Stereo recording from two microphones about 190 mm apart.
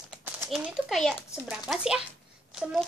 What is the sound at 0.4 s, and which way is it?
A child's voice, centre (ahead or behind).